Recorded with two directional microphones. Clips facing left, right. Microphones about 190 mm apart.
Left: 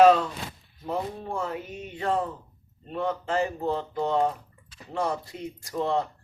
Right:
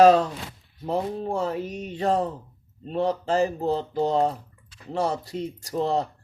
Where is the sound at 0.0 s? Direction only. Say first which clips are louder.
Right 2 dB; 40° right (ahead or behind).